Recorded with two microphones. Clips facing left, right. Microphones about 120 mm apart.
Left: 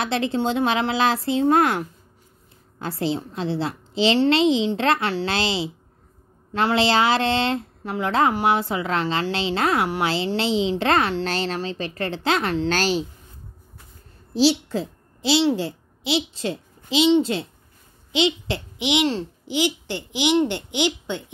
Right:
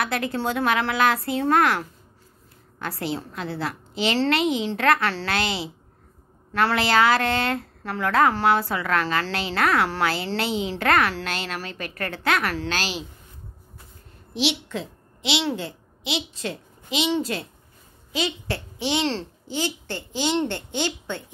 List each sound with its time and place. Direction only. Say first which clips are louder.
0.0 s a woman's voice: left 3 dB; 25° left (ahead or behind)
12.6 s speech: left 7 dB; 40° left (ahead or behind)
14.3 s a child's voice: left 7 dB; 35° left (ahead or behind); by 21.2 s 15° left (ahead or behind)